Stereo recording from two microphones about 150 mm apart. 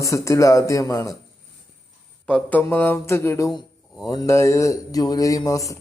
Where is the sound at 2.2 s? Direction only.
10° left (ahead or behind).